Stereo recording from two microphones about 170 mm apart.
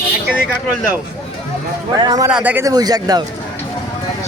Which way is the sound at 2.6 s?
20° right (ahead or behind).